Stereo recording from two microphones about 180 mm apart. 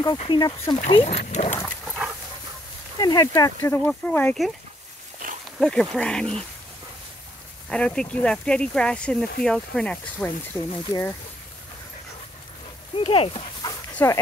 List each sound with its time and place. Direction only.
0.3 s speech: 25° left (ahead or behind); by 1.6 s 40° left (ahead or behind)
3.0 s speech: 20° left (ahead or behind)
5.2 s a sound: 50° right (ahead or behind)
5.6 s speech: 5° left (ahead or behind)
7.7 s speech: 5° left (ahead or behind)
12.9 s speech: 30° left (ahead or behind)
13.9 s speech: 15° left (ahead or behind)